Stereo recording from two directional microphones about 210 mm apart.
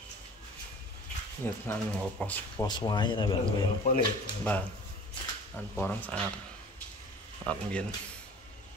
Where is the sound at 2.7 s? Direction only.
20° left (ahead or behind).